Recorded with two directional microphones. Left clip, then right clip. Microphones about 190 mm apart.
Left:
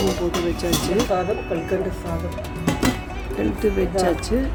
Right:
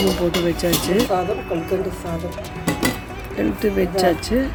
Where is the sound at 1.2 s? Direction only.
Centre (ahead or behind).